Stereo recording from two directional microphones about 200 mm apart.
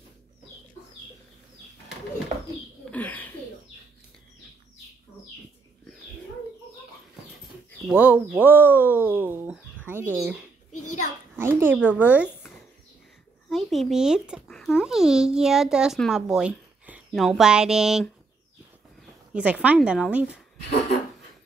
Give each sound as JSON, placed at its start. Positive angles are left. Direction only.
{"t": 2.8, "sound": "bird", "side_deg": 5}
{"t": 7.9, "sound": "speech", "side_deg": -10}
{"t": 10.7, "sound": "a sound", "side_deg": 40}
{"t": 11.3, "sound": "speech", "side_deg": -10}
{"t": 13.5, "sound": "a child's voice", "side_deg": 0}
{"t": 19.3, "sound": "a woman's voice", "side_deg": -5}